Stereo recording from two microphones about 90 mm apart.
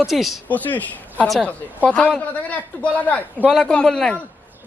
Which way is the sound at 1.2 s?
5° left (ahead or behind).